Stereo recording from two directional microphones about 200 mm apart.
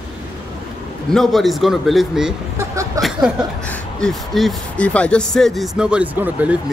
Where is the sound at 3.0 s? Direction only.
15° right (ahead or behind).